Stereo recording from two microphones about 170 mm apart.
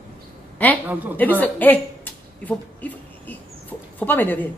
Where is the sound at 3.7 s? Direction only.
10° left (ahead or behind).